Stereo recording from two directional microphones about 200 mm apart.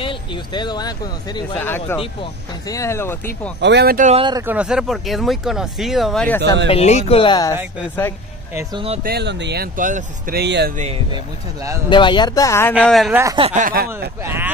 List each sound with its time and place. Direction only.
0.0 s speech: 20° left (ahead or behind)
1.6 s speech: 10° left (ahead or behind)
3.6 s speech: 55° right (ahead or behind)
4.1 s speech: 25° right (ahead or behind)
4.4 s speech: 10° right (ahead or behind)
6.7 s speech: 30° left (ahead or behind)
9.0 s speech: 55° right (ahead or behind); by 10.4 s 40° right (ahead or behind)
10.4 s speech: 55° right (ahead or behind)
11.9 s speech: 25° left (ahead or behind)
12.8 s speech: centre (ahead or behind)
13.1 s speech: 15° right (ahead or behind)
13.4 s speech: 35° right (ahead or behind)
14.2 s speech: 10° right (ahead or behind)